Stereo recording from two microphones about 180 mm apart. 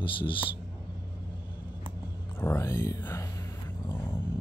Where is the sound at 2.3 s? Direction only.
15° left (ahead or behind).